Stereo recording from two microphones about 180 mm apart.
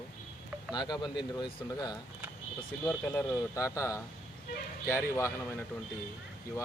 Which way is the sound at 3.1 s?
10° left (ahead or behind).